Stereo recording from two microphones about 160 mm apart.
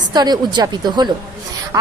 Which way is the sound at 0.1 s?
25° right (ahead or behind).